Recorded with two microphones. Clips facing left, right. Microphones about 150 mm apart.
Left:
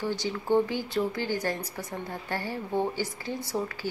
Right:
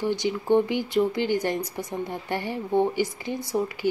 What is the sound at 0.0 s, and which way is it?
Speech, 15° right (ahead or behind).